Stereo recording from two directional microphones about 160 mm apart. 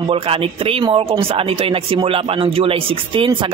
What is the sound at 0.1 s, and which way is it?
Speech, 35° right (ahead or behind).